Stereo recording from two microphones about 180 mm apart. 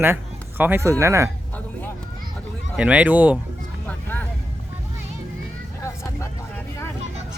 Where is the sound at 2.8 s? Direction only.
5° right (ahead or behind).